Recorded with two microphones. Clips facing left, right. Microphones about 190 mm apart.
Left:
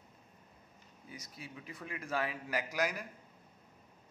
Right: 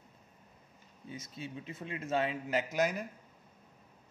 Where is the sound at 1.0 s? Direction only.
25° right (ahead or behind).